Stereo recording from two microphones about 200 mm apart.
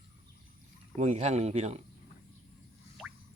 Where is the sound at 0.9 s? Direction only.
35° right (ahead or behind).